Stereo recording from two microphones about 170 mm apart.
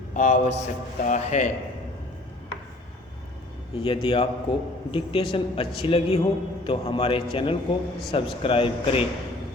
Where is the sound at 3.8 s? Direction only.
30° left (ahead or behind).